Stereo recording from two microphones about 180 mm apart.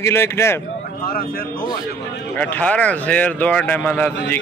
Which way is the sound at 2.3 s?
10° left (ahead or behind).